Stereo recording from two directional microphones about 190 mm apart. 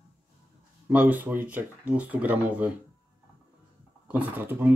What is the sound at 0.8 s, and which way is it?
Speech, 10° right (ahead or behind).